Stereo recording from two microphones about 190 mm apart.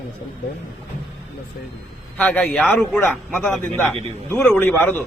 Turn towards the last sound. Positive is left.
turn(degrees=10)  # may be behind; listen again after turning